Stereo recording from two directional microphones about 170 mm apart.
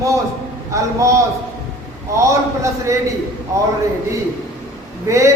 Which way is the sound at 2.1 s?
20° right (ahead or behind).